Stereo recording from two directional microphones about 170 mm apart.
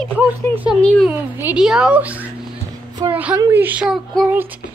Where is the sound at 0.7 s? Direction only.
5° right (ahead or behind).